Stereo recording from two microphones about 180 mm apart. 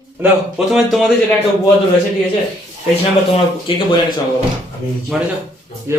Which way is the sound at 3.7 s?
30° left (ahead or behind).